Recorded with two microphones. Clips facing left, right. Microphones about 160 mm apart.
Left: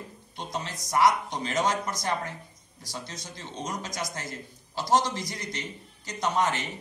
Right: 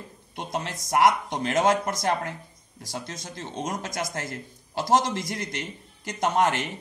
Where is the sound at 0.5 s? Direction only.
50° right (ahead or behind).